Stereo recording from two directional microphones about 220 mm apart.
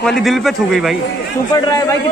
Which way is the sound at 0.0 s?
Centre (ahead or behind).